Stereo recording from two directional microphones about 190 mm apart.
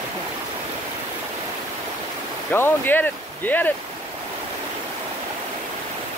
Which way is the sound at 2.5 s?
10° left (ahead or behind).